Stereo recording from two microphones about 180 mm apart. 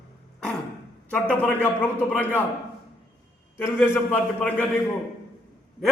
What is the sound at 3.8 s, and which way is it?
Speech, 10° left (ahead or behind).